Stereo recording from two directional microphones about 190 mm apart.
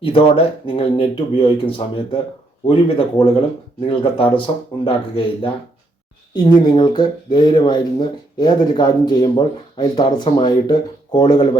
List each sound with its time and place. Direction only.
0.0 s speech: 30° left (ahead or behind)